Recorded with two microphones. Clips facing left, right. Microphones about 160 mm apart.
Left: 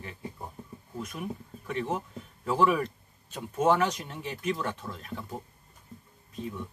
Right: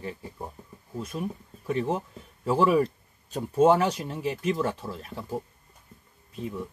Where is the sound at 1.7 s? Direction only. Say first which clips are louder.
Right 4 dB; 30° right (ahead or behind).